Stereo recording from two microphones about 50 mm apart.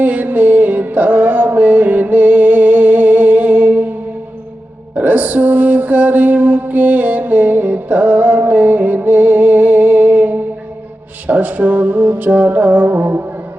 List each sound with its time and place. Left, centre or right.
0.0 s music: right
4.9 s music: right